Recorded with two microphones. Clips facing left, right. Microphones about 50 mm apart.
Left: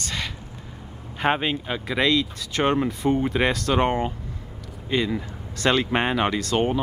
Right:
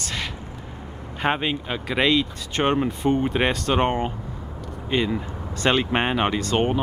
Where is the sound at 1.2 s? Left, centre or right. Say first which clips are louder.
Left 1 dB; centre.